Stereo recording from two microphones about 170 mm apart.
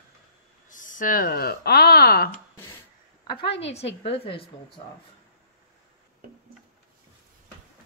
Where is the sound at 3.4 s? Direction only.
90° left.